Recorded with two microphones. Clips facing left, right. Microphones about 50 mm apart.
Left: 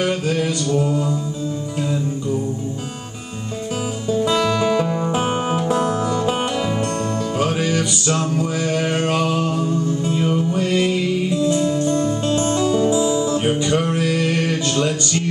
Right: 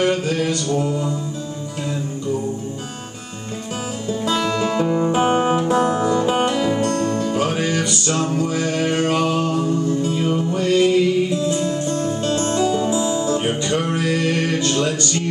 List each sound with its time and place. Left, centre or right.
0.0 s mantra: centre
4.8 s music: centre
6.4 s music: centre
6.8 s music: centre
7.2 s music: centre
7.8 s mantra: centre
10.1 s music: centre
12.7 s music: centre
13.6 s mantra: centre
13.8 s music: centre